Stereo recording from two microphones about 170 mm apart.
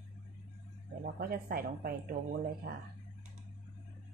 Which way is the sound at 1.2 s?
60° right (ahead or behind).